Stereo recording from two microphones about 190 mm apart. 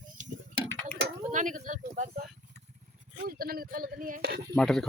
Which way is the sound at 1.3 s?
45° right (ahead or behind).